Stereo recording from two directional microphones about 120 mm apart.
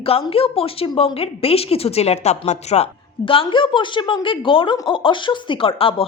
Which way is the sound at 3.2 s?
45° left (ahead or behind).